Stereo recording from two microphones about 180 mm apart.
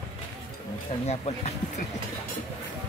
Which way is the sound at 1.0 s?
35° left (ahead or behind).